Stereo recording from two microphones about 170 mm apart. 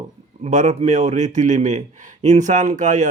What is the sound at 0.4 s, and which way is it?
Speech, 45° right (ahead or behind).